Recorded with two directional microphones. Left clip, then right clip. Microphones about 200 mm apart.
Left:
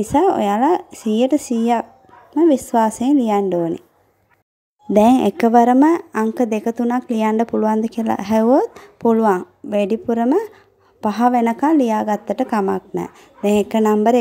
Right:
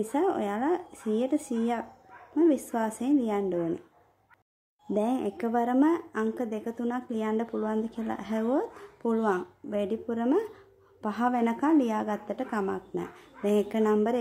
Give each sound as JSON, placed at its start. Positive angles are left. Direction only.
{"t": 0.0, "sound": "speech", "side_deg": 30}
{"t": 4.9, "sound": "speech", "side_deg": 40}